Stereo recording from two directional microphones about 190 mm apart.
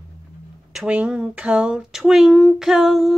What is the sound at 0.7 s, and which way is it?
Speech, 5° right (ahead or behind).